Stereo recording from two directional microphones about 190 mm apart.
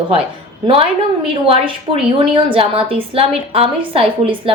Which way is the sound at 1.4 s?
30° right (ahead or behind).